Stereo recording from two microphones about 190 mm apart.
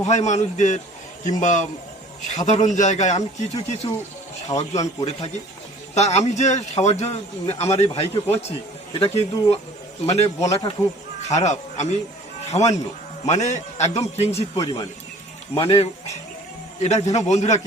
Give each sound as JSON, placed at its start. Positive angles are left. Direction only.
{"t": 0.0, "sound": "speech", "side_deg": 35}
{"t": 14.6, "sound": "speech", "side_deg": 20}